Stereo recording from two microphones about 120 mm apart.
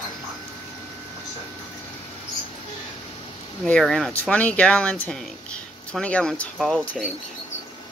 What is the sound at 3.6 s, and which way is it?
Speech, 5° left (ahead or behind).